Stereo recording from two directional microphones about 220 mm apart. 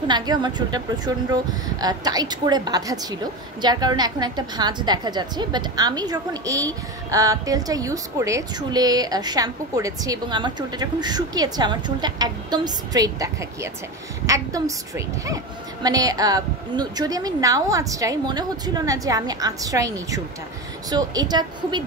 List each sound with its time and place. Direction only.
0.1 s a woman's voice: 20° right (ahead or behind)